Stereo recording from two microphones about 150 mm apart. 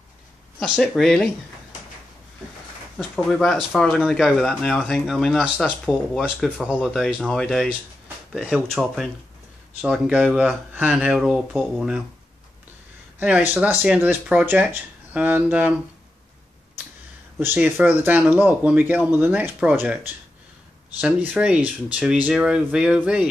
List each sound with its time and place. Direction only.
0.6 s speech: centre (ahead or behind)
3.0 s speech: 5° left (ahead or behind)
13.2 s speech: 10° right (ahead or behind)
17.4 s speech: 15° right (ahead or behind)